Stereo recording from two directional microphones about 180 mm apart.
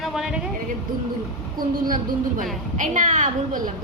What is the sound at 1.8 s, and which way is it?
A woman's voice, 50° right (ahead or behind).